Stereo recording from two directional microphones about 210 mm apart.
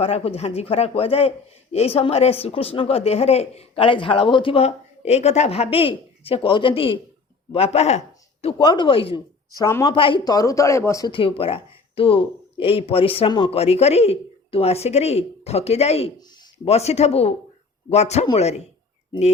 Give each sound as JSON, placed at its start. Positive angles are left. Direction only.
{"t": 0.0, "sound": "speech", "side_deg": 25}